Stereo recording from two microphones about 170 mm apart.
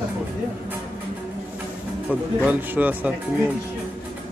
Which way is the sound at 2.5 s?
10° right (ahead or behind).